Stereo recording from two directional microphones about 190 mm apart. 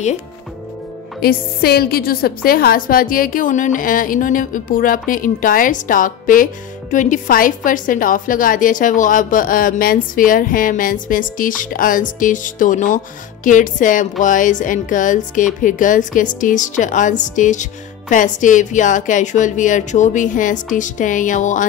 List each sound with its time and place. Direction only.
1.2 s a woman's voice: 55° left (ahead or behind)